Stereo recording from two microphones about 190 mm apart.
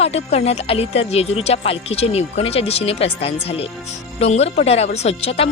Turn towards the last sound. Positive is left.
turn(degrees=30)  # may be behind; listen again after turning